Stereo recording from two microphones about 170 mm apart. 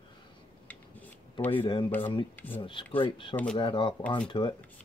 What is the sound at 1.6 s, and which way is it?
Speech, 30° left (ahead or behind).